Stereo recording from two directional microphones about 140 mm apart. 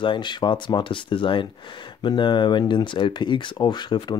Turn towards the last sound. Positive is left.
turn(degrees=30)  # may be behind; listen again after turning